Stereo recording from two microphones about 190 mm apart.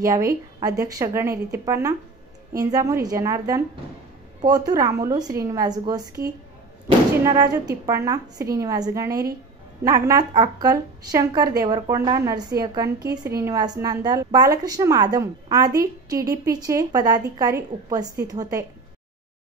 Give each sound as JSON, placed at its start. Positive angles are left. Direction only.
{"t": 0.6, "sound": "a woman's voice", "side_deg": -20}